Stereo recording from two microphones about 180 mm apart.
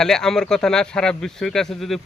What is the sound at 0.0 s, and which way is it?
Speech, 5° left (ahead or behind).